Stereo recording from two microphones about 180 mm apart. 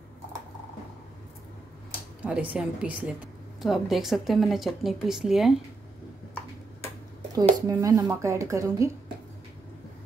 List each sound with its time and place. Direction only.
2.2 s speech: 5° right (ahead or behind)
7.6 s speech: 20° right (ahead or behind)